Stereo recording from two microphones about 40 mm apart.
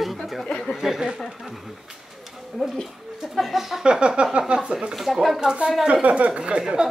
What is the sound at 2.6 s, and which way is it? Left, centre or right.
Speech, centre.